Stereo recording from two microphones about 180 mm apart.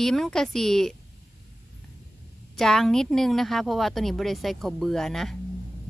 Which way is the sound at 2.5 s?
Centre (ahead or behind).